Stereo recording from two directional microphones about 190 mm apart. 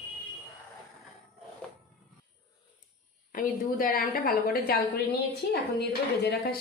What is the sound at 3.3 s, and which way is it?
A woman's voice, 45° left (ahead or behind).